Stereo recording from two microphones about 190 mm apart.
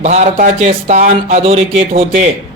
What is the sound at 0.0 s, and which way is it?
Speech, 35° right (ahead or behind).